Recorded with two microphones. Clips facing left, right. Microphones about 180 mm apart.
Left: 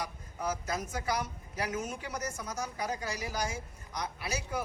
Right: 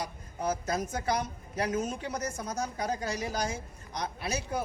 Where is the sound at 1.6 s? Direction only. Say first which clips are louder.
Right 4 dB; 35° right (ahead or behind).